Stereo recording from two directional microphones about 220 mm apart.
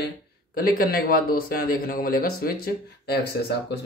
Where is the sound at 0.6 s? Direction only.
40° left (ahead or behind).